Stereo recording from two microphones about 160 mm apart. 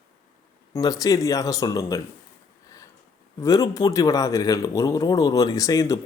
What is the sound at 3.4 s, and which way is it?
Speech, 20° left (ahead or behind).